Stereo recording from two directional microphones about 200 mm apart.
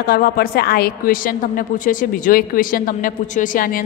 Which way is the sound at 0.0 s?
45° left (ahead or behind).